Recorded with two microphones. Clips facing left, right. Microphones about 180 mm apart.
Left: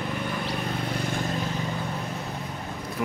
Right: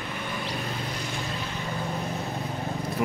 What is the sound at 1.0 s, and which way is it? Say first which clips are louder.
Vehicle: left 5 dB; 50° left (ahead or behind).